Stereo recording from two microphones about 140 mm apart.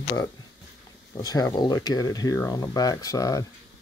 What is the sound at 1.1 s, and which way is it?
Speech, 25° left (ahead or behind).